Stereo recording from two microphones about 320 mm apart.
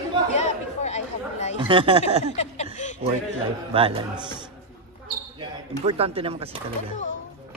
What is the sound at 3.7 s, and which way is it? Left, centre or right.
A man's voice, centre.